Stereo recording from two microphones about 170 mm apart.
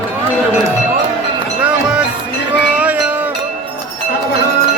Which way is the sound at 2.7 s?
10° right (ahead or behind).